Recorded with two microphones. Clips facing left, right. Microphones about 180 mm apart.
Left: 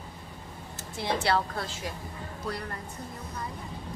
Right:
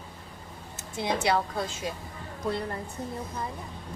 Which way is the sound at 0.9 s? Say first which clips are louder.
Right 1 dB; 20° right (ahead or behind).